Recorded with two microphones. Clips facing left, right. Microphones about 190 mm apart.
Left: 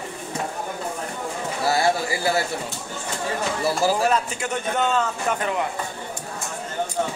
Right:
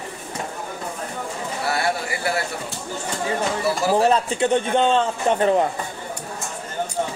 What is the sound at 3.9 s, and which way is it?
A man's voice, 30° right (ahead or behind).